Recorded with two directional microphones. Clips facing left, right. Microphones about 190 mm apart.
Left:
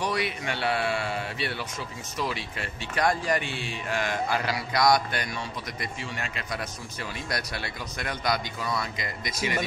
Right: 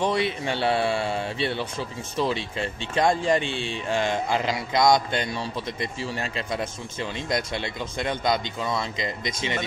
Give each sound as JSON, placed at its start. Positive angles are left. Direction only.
{"t": 0.0, "sound": "speech", "side_deg": -25}